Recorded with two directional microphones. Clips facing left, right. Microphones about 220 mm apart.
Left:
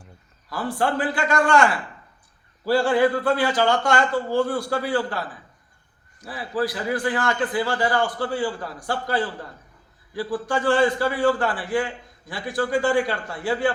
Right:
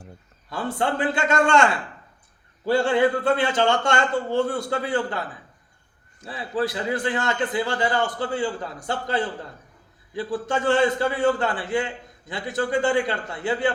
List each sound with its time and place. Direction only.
0.5 s a man's voice: 25° right (ahead or behind)
6.6 s a man's voice: 25° right (ahead or behind)